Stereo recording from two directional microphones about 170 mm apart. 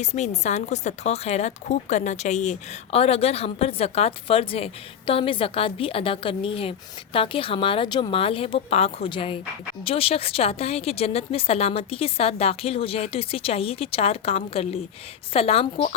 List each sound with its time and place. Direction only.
0.0 s speech: 40° left (ahead or behind)